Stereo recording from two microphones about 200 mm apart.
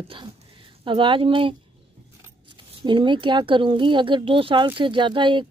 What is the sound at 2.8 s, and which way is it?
A woman's voice, 25° right (ahead or behind).